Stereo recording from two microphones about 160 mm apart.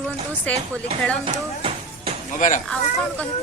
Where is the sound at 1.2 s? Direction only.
35° right (ahead or behind).